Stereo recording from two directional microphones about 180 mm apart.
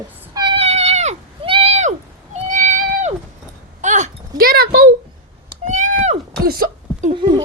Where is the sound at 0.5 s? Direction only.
35° right (ahead or behind); by 4.9 s 55° right (ahead or behind).